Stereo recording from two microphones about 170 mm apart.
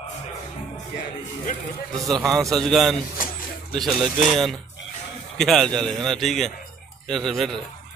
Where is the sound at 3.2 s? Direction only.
55° left (ahead or behind).